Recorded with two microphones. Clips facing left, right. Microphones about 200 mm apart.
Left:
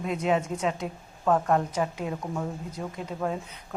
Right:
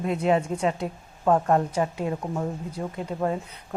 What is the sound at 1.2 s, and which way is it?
Speech, 20° right (ahead or behind).